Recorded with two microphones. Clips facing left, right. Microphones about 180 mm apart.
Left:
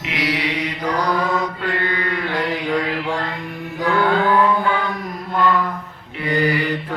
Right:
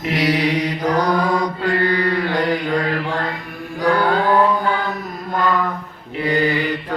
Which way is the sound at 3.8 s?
40° right (ahead or behind).